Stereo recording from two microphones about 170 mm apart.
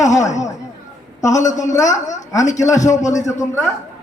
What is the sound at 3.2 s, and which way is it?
Speech, 20° left (ahead or behind).